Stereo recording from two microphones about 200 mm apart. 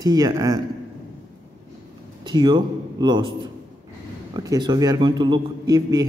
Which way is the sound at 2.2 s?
20° right (ahead or behind).